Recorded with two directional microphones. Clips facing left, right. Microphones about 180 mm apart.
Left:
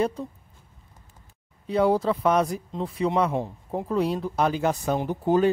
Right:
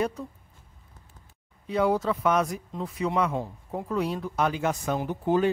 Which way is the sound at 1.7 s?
35° left (ahead or behind).